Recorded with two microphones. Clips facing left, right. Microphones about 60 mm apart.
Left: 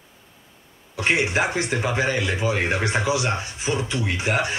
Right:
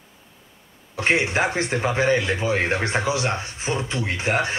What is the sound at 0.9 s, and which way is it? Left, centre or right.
Speech, right.